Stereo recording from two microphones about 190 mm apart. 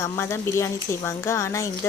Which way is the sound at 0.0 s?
15° left (ahead or behind).